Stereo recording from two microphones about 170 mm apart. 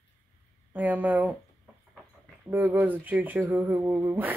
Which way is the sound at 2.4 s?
10° right (ahead or behind).